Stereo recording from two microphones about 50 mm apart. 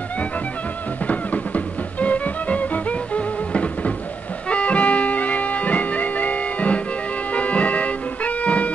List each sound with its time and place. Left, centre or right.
1.0 s music: left